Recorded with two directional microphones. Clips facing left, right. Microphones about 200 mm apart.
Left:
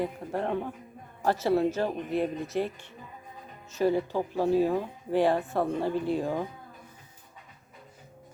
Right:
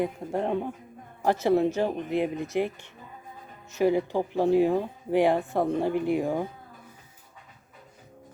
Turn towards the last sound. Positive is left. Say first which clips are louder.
# right 3 dB
turn(degrees=-10)  # may be behind; listen again after turning